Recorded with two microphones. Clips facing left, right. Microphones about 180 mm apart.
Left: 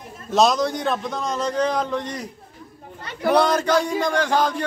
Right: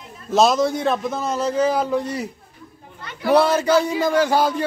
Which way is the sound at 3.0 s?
40° left (ahead or behind).